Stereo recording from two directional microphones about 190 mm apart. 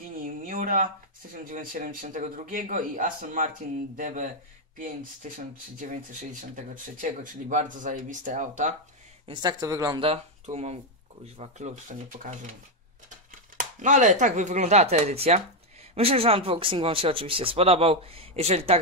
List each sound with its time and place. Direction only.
0.2 s a sound: 45° right (ahead or behind)
1.3 s a man's voice: 45° right (ahead or behind)
9.3 s speech: 20° right (ahead or behind)
10.0 s speech: 35° right (ahead or behind)